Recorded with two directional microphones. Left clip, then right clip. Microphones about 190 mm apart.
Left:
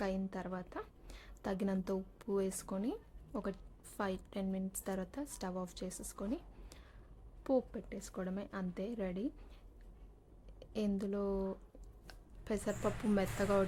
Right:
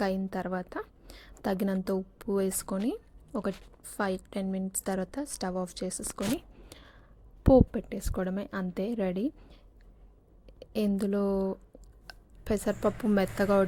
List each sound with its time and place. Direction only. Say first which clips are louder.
0.0 s a woman's voice: right 9 dB; 25° right (ahead or behind)
10.4 s a woman's voice: right 8 dB; 30° right (ahead or behind)